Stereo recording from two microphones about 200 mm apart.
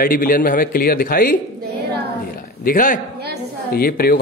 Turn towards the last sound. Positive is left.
turn(degrees=50)  # may be behind; listen again after turning